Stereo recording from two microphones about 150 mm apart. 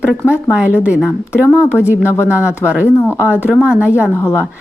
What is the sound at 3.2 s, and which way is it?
Speech, 10° right (ahead or behind).